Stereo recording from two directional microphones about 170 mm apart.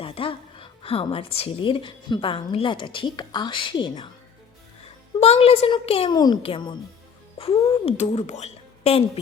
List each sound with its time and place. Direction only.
0.0 s a woman's voice: 30° left (ahead or behind)
5.2 s a woman's voice: 35° left (ahead or behind)